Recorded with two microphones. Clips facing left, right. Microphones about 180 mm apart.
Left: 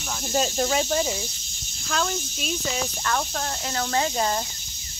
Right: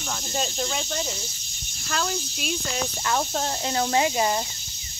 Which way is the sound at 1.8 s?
Centre (ahead or behind).